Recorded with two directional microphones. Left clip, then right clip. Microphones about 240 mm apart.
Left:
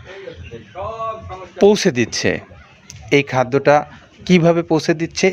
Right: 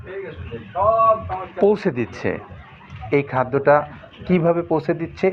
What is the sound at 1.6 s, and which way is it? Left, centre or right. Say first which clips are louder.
A man's voice: left 5 dB; left.